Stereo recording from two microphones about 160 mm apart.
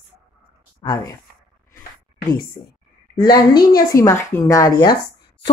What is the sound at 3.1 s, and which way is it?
Speech, 25° left (ahead or behind).